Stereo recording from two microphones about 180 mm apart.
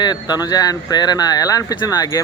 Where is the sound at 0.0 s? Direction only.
25° left (ahead or behind).